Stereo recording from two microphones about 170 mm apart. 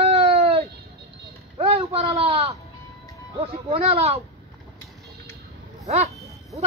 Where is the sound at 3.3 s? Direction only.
35° right (ahead or behind).